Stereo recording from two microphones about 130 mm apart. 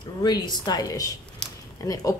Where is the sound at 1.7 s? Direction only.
25° left (ahead or behind).